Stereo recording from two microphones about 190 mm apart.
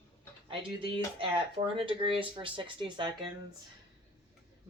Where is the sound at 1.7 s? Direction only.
30° right (ahead or behind).